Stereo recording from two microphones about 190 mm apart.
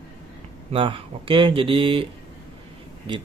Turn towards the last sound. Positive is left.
turn(degrees=-25)  # may be behind; listen again after turning